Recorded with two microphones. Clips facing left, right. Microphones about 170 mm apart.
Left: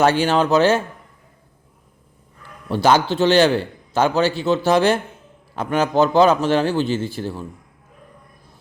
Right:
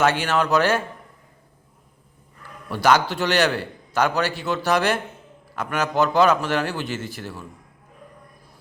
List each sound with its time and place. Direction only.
0.0 s a man's voice: 30° left (ahead or behind)
2.6 s a man's voice: 30° left (ahead or behind)